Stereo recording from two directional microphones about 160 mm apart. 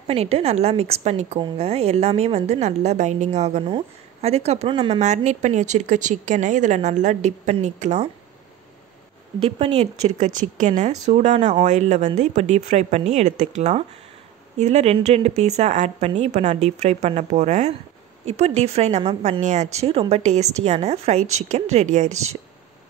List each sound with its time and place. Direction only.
0.0 s a woman's voice: 40° right (ahead or behind)
5.0 s a woman's voice: 45° right (ahead or behind)
9.4 s a woman's voice: 40° right (ahead or behind)